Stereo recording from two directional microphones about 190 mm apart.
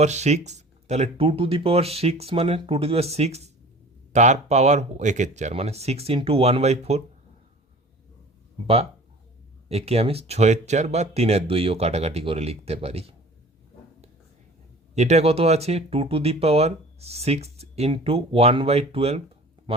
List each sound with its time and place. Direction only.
0.0 s speech: 35° right (ahead or behind)
8.6 s speech: 30° right (ahead or behind)
14.9 s speech: 35° right (ahead or behind)